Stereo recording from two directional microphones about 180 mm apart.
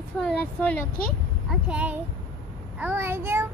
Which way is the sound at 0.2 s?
5° left (ahead or behind).